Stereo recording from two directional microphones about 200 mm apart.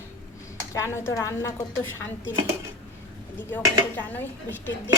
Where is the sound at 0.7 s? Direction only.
15° left (ahead or behind).